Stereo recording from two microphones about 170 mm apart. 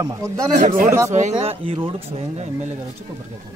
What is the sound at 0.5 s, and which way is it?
Speech, 45° right (ahead or behind).